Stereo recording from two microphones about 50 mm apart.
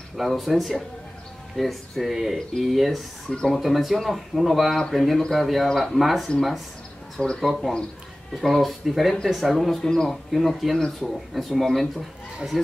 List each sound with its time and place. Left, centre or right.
0.2 s speech: centre
2.3 s speech: centre
3.3 s speech: centre
3.6 s speech: centre
7.3 s speech: centre
9.8 s speech: centre